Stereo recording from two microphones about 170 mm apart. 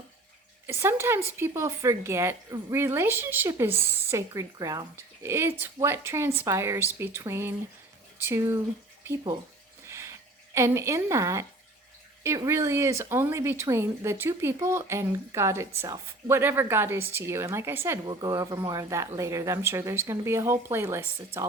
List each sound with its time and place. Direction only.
0.7 s speech: 15° right (ahead or behind)
9.9 s a sound: 15° right (ahead or behind)
12.2 s speech: 15° right (ahead or behind)